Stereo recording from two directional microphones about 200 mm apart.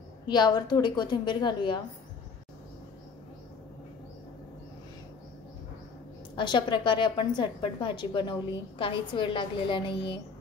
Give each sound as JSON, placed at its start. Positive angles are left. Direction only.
{"t": 0.3, "sound": "a woman's voice", "side_deg": 20}
{"t": 6.3, "sound": "a woman's voice", "side_deg": 20}